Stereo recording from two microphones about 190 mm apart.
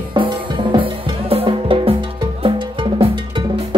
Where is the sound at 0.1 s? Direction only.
25° right (ahead or behind).